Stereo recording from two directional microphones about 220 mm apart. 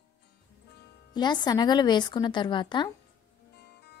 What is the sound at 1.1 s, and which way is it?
A woman's voice, 20° left (ahead or behind).